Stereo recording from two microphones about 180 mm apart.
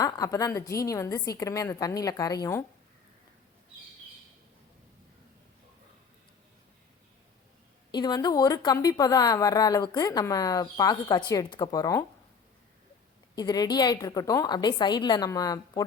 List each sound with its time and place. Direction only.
0.0 s a woman's voice: 20° left (ahead or behind)
7.9 s a woman's voice: 25° left (ahead or behind)
13.3 s a woman's voice: 20° left (ahead or behind)